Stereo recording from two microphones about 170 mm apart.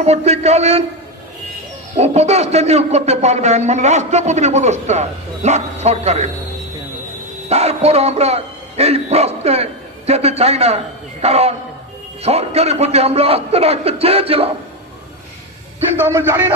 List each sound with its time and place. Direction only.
0.0 s a man's voice: 40° right (ahead or behind)
2.0 s a man's voice: 40° right (ahead or behind)
7.4 s a man's voice: 40° right (ahead or behind)
16.0 s speech: 15° right (ahead or behind)